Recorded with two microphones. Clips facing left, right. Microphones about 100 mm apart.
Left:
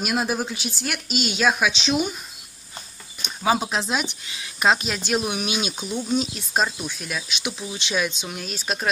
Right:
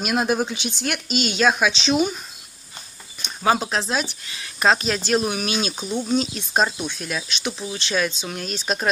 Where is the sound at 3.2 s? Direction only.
10° left (ahead or behind).